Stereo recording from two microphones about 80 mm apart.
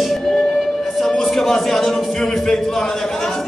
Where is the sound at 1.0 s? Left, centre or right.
Centre.